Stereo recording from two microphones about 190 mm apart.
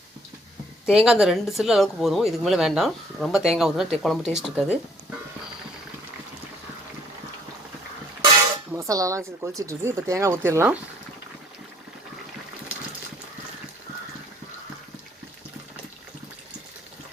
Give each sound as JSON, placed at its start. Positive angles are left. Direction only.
{"t": 0.9, "sound": "speech", "side_deg": -5}
{"t": 8.7, "sound": "speech", "side_deg": -15}